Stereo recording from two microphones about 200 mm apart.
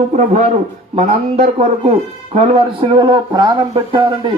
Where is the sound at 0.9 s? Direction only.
30° right (ahead or behind).